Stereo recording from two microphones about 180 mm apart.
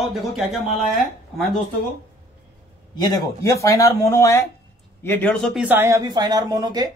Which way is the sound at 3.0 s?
20° left (ahead or behind).